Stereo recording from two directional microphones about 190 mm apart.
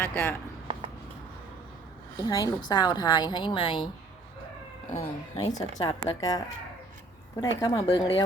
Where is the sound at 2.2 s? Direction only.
20° left (ahead or behind).